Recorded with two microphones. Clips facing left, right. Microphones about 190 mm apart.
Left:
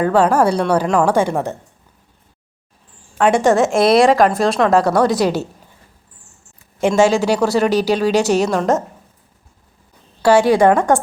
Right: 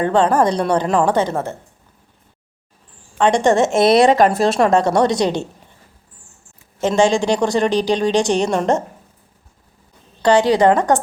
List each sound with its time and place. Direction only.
0.0 s a woman's voice: 5° left (ahead or behind)
3.2 s a woman's voice: 5° left (ahead or behind)
6.7 s a woman's voice: 10° left (ahead or behind)
10.3 s a woman's voice: 15° right (ahead or behind)
10.8 s a woman's voice: 10° left (ahead or behind)